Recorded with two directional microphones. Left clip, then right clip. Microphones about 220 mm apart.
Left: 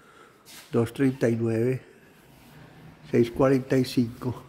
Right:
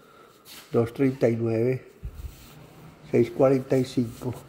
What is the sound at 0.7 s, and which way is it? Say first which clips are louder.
Speech: right 1 dB; 10° left (ahead or behind).